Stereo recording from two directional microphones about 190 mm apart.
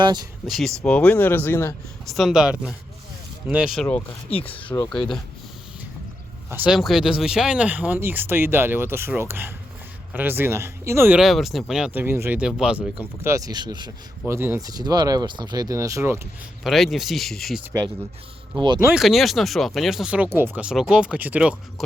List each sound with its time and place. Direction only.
0.0 s speech: 20° right (ahead or behind)
0.4 s speech: centre (ahead or behind)
2.0 s speech: centre (ahead or behind)
3.8 s speech: 10° left (ahead or behind)
4.4 s speech: 30° left (ahead or behind)
6.5 s speech: 5° right (ahead or behind)
16.6 s speech: centre (ahead or behind)
18.5 s speech: 25° right (ahead or behind)
18.9 s speech: centre (ahead or behind)